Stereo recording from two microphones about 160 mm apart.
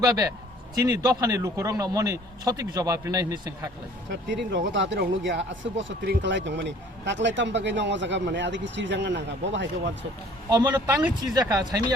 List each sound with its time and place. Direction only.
0.0 s a man's voice: 20° right (ahead or behind)
4.1 s speech: 90° right
10.5 s a man's voice: 25° right (ahead or behind)